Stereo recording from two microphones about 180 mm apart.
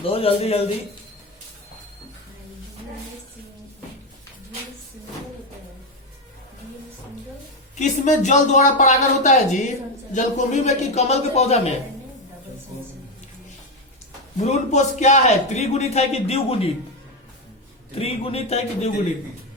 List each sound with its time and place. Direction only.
0.0 s speech: 30° left (ahead or behind)
7.8 s speech: 40° left (ahead or behind)
14.4 s speech: 40° left (ahead or behind)
17.9 s speech: 30° left (ahead or behind)